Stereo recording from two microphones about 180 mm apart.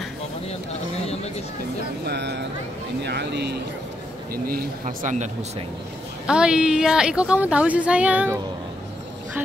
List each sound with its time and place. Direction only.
2.0 s speech: 70° right (ahead or behind)
4.3 s speech: 50° right (ahead or behind)
6.2 s a woman's voice: 5° right (ahead or behind)